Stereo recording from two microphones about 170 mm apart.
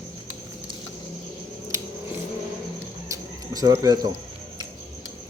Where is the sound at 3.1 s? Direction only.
20° right (ahead or behind).